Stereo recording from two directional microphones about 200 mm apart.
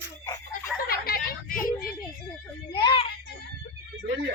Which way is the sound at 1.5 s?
45° left (ahead or behind).